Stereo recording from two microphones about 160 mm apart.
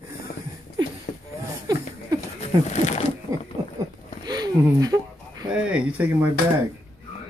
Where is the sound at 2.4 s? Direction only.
45° left (ahead or behind).